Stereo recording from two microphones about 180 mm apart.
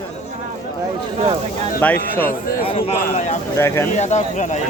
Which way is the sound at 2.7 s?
30° left (ahead or behind).